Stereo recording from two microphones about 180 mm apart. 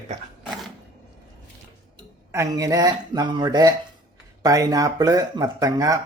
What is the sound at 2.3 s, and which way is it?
Speech, 20° right (ahead or behind).